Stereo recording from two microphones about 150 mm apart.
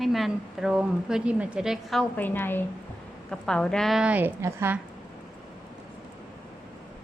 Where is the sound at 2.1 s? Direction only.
15° left (ahead or behind); by 4.8 s 15° right (ahead or behind).